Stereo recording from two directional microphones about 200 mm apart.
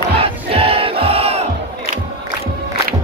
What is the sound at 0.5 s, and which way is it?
Crowd, 30° right (ahead or behind).